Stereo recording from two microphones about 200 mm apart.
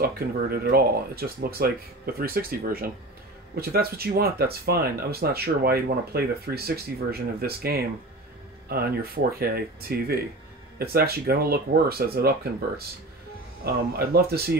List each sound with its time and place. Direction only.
0.0 s speech: 50° right (ahead or behind)
13.9 s speech: 50° right (ahead or behind)